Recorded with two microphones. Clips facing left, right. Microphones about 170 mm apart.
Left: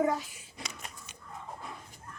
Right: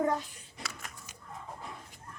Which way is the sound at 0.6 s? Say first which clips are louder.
Even; 20° left (ahead or behind).